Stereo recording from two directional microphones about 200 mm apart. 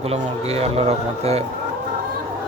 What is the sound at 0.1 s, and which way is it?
A man's voice, 30° right (ahead or behind).